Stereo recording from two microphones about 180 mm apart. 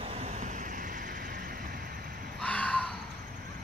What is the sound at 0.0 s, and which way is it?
Vehicle, 35° right (ahead or behind).